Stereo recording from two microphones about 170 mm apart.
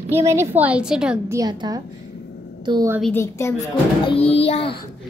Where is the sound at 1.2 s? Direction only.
20° right (ahead or behind).